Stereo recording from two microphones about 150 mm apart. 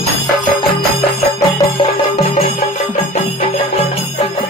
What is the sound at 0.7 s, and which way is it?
Music, 90° left.